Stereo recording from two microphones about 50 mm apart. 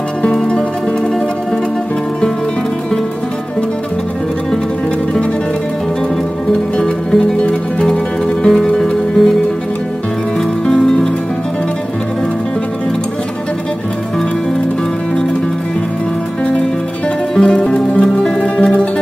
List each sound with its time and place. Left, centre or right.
0.2 s music: centre
6.8 s music: centre
10.7 s music: centre
17.4 s music: centre